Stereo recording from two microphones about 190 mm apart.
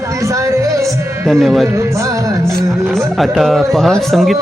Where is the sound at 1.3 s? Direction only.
Centre (ahead or behind).